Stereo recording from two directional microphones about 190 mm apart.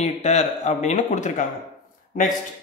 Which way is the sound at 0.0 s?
35° left (ahead or behind).